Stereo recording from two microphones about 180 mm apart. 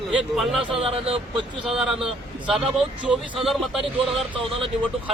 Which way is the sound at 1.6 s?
Centre (ahead or behind).